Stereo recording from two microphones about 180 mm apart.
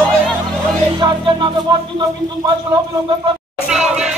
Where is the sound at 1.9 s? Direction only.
20° right (ahead or behind).